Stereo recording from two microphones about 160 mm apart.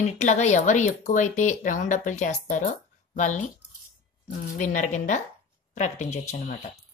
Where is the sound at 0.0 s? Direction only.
45° left (ahead or behind).